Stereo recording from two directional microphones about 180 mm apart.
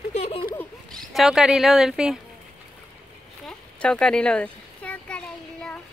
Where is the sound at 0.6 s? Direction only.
Centre (ahead or behind).